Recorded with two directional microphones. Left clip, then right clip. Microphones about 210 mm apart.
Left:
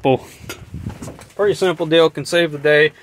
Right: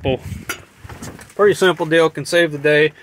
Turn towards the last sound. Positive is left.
turn(degrees=-5)  # may be behind; listen again after turning